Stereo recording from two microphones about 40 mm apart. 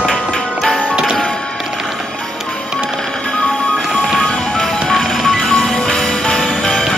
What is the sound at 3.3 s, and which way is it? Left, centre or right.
Music, left.